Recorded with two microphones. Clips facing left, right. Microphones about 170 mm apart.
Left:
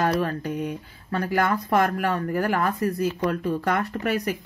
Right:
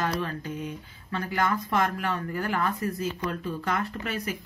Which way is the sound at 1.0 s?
40° left (ahead or behind).